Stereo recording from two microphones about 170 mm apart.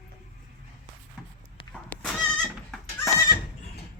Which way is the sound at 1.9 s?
5° left (ahead or behind).